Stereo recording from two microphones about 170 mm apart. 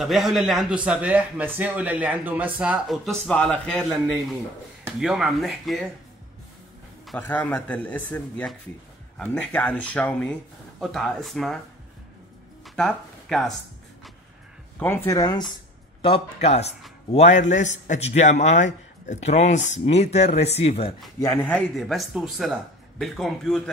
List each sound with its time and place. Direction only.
0.0 s a man's voice: centre (ahead or behind)
7.2 s a man's voice: 10° left (ahead or behind)
12.6 s a sound: centre (ahead or behind)
14.8 s speech: 15° left (ahead or behind)
16.0 s a man's voice: 35° left (ahead or behind)
21.2 s a man's voice: 10° left (ahead or behind)